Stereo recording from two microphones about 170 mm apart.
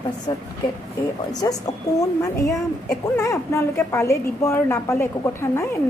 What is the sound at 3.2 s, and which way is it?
A woman's voice, 15° left (ahead or behind).